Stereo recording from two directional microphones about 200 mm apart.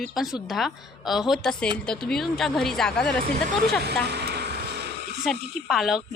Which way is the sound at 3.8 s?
55° right (ahead or behind).